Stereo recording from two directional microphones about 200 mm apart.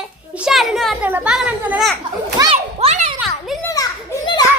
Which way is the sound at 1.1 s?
5° right (ahead or behind).